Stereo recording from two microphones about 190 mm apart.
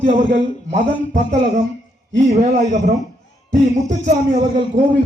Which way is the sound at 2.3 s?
40° right (ahead or behind).